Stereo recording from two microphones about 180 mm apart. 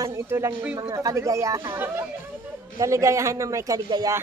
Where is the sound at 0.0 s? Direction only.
15° right (ahead or behind).